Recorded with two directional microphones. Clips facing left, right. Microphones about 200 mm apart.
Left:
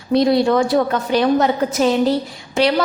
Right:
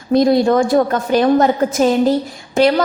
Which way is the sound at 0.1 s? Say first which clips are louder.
Right 2 dB; 45° right (ahead or behind).